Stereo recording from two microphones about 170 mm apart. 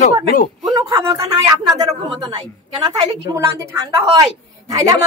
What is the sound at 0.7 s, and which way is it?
Speech, 20° right (ahead or behind).